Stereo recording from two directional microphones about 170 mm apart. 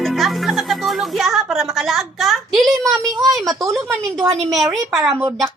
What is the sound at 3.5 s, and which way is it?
Speech, 15° right (ahead or behind).